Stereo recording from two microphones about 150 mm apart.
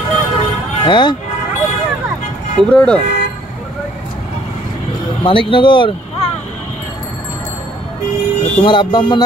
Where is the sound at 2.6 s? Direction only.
5° left (ahead or behind).